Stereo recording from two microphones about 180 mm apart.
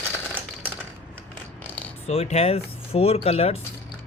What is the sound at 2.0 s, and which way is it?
Speech, 35° left (ahead or behind).